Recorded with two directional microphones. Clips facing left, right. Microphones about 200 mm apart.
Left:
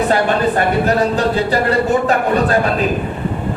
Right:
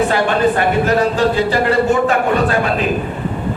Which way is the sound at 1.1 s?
35° left (ahead or behind).